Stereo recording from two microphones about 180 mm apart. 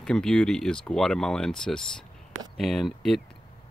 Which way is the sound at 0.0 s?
5° left (ahead or behind).